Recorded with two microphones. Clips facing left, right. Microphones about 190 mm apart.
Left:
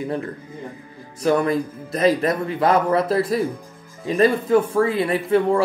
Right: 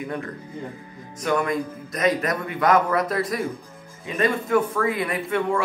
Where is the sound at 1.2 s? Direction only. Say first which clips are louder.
Left 4 dB; 30° left (ahead or behind).